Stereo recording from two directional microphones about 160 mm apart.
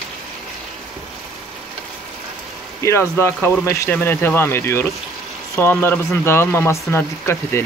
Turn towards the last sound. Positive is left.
turn(degrees=15)  # may be behind; listen again after turning